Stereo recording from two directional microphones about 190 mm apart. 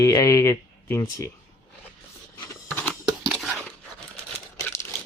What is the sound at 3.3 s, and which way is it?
Dog, centre (ahead or behind).